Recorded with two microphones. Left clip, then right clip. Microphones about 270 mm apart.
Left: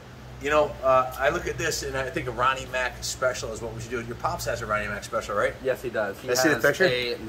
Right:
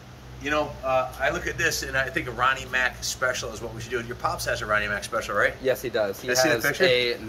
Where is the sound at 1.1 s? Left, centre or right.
Centre.